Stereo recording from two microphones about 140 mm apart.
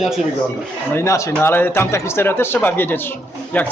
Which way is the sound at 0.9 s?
20° left (ahead or behind).